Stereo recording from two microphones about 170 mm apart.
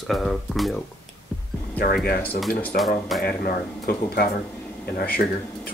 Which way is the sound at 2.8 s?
Centre (ahead or behind).